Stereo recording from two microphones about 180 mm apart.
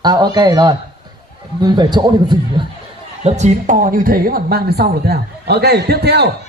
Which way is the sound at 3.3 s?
40° right (ahead or behind).